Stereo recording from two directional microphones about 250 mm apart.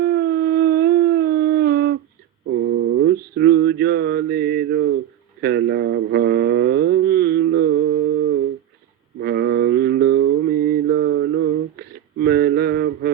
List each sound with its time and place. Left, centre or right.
0.0 s howl: right
2.5 s a sound: right
5.4 s mantra: right